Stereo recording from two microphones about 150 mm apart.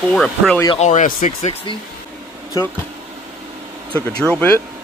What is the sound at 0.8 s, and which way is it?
Speech, 55° left (ahead or behind).